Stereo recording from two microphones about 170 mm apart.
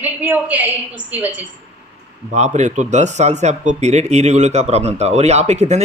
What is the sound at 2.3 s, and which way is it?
Speech, 45° right (ahead or behind).